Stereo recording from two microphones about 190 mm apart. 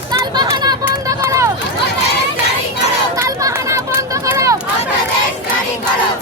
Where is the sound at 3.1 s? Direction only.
15° right (ahead or behind).